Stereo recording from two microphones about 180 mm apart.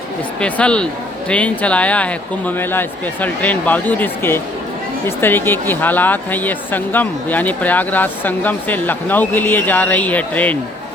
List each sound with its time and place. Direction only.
0.3 s speech: 5° left (ahead or behind)